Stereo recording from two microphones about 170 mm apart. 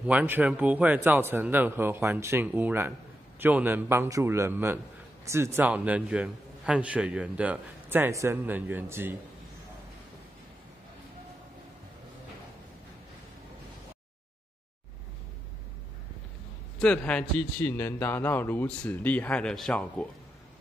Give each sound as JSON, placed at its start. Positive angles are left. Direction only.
{"t": 0.0, "sound": "a man's voice", "side_deg": -10}
{"t": 16.8, "sound": "a man's voice", "side_deg": 5}